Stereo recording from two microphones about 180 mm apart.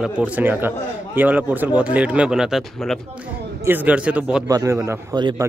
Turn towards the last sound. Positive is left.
turn(degrees=-25)  # may be behind; listen again after turning